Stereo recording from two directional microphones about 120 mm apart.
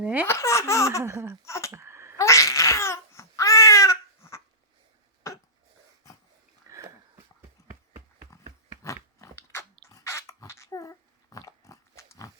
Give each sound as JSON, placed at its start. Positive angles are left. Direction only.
{"t": 0.0, "sound": "speech", "side_deg": -10}
{"t": 0.3, "sound": "speech", "side_deg": 25}
{"t": 1.0, "sound": "laughter", "side_deg": -25}
{"t": 1.5, "sound": "a sound", "side_deg": 25}
{"t": 1.7, "sound": "sneeze", "side_deg": -20}
{"t": 2.1, "sound": "babbling", "side_deg": 25}
{"t": 6.7, "sound": "sniff", "side_deg": -25}
{"t": 7.6, "sound": "a sound", "side_deg": 25}
{"t": 8.8, "sound": "biting", "side_deg": 25}
{"t": 9.9, "sound": "dog", "side_deg": 25}